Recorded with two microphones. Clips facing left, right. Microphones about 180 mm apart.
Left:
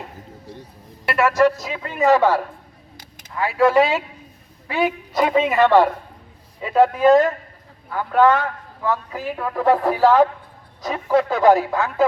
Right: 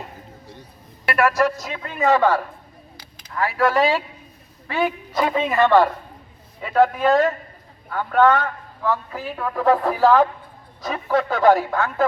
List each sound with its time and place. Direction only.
1.1 s a man's voice: centre (ahead or behind)
6.8 s a man's voice: centre (ahead or behind)